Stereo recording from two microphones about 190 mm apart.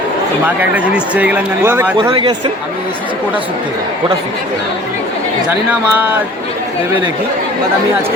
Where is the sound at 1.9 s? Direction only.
25° right (ahead or behind).